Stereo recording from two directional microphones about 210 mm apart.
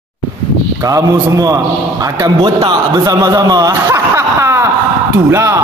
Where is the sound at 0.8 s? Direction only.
15° right (ahead or behind).